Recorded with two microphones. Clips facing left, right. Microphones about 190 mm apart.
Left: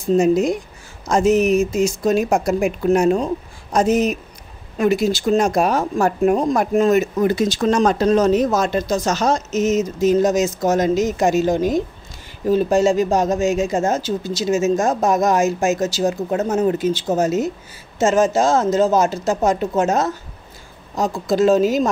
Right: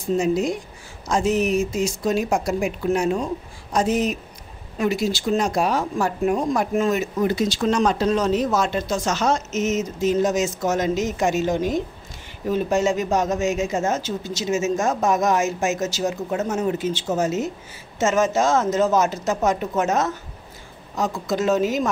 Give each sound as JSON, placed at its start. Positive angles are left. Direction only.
{"t": 0.2, "sound": "speech", "side_deg": 50}
{"t": 21.3, "sound": "speech", "side_deg": 30}